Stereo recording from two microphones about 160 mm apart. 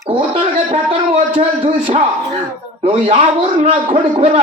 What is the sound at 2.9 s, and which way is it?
A man's voice, 35° right (ahead or behind).